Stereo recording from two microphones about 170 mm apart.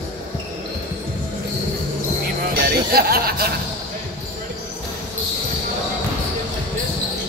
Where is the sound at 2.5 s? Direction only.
65° right (ahead or behind).